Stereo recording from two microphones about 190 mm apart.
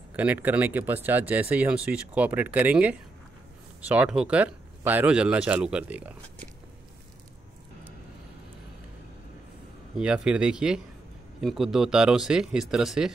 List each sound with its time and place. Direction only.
0.1 s speech: 10° right (ahead or behind)
9.9 s speech: 5° right (ahead or behind)